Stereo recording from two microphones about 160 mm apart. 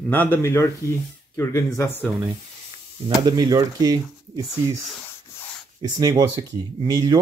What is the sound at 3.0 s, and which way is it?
Speech, 25° right (ahead or behind).